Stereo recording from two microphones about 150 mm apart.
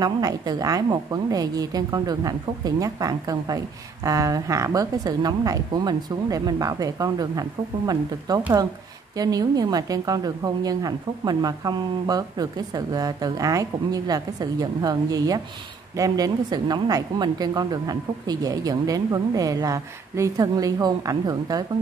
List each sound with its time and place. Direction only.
0.0 s a woman's voice: 25° right (ahead or behind)